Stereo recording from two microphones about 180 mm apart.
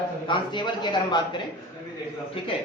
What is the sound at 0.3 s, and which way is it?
A man's voice, 25° left (ahead or behind).